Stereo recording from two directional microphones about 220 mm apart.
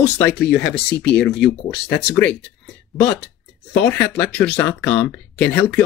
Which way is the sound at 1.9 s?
5° left (ahead or behind).